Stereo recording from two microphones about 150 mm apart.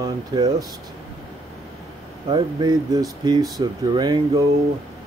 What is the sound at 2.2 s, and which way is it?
Speech, 30° right (ahead or behind).